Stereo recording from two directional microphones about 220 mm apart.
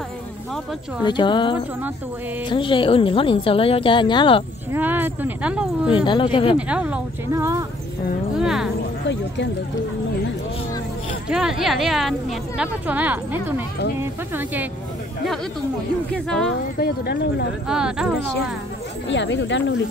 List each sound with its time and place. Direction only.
1.0 s a woman's voice: 20° left (ahead or behind)
4.7 s speech: 10° right (ahead or behind)
6.0 s a woman's voice: 20° left (ahead or behind)
6.5 s speech: 5° right (ahead or behind)
8.4 s speech: centre (ahead or behind)
9.0 s speech: 55° left (ahead or behind)
11.2 s speech: centre (ahead or behind)
16.1 s speech: 5° left (ahead or behind)
16.7 s speech: 45° left (ahead or behind)
17.6 s speech: 5° right (ahead or behind)
19.0 s speech: 55° left (ahead or behind)